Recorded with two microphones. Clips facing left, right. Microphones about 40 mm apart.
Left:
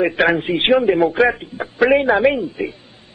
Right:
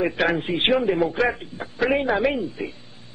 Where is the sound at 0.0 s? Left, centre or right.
Left.